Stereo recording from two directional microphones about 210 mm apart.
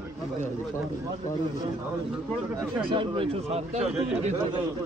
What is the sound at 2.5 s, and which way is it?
Speech, 20° right (ahead or behind).